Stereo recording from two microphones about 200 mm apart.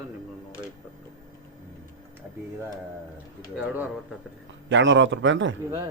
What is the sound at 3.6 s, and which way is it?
Speech, 5° right (ahead or behind).